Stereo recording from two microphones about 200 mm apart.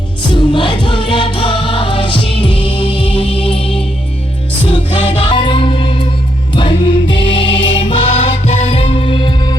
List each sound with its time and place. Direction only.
0.2 s music: 25° left (ahead or behind)